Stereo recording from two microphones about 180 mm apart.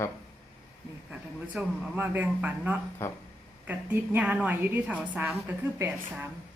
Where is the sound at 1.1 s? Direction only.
10° right (ahead or behind).